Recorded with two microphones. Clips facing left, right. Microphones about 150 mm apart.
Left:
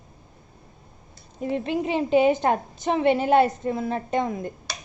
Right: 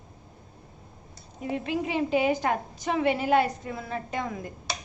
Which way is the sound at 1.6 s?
25° left (ahead or behind).